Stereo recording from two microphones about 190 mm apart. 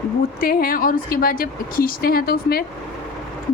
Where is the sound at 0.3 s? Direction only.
50° left (ahead or behind).